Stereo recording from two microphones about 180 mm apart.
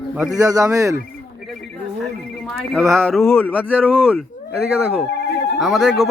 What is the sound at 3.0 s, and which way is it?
Speech, 5° left (ahead or behind).